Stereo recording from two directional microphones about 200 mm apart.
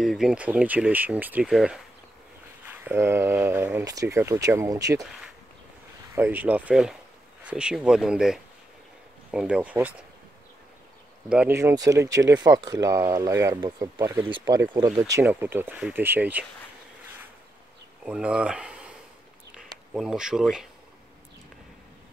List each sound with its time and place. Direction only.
0.0 s speech: centre (ahead or behind); by 5.0 s 15° right (ahead or behind)
6.1 s speech: 10° right (ahead or behind)
11.2 s speech: 5° right (ahead or behind)
18.0 s speech: 5° right (ahead or behind)
19.9 s speech: 5° right (ahead or behind)